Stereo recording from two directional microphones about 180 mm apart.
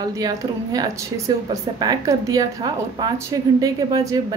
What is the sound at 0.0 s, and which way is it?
Speech, 20° right (ahead or behind).